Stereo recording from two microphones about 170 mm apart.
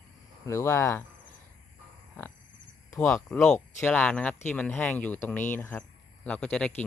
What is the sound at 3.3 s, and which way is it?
Speech, 5° left (ahead or behind).